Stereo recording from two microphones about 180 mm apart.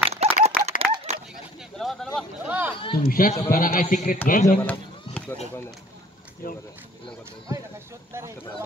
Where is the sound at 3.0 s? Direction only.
50° left (ahead or behind).